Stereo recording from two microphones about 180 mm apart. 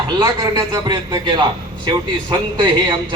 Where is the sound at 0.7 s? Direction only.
25° right (ahead or behind).